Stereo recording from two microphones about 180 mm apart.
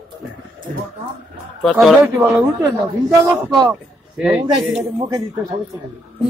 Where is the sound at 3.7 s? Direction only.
5° right (ahead or behind).